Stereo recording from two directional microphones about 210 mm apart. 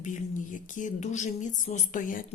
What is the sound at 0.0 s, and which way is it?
Speech, 35° left (ahead or behind).